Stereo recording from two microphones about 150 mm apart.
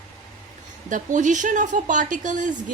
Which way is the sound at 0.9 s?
55° right (ahead or behind).